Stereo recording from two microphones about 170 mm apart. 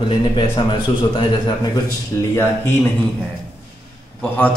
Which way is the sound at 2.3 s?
15° left (ahead or behind).